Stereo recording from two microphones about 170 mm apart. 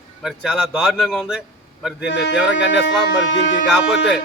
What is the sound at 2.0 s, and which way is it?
Speech, 90° left.